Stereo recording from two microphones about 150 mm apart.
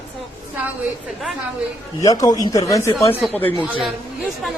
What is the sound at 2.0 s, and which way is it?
A man's voice, 25° left (ahead or behind).